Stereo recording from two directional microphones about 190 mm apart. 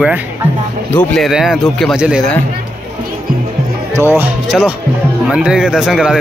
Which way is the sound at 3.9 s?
10° right (ahead or behind).